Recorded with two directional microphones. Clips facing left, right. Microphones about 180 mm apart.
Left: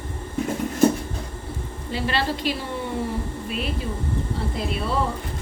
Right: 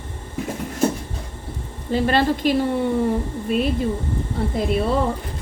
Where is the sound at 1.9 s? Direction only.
50° right (ahead or behind).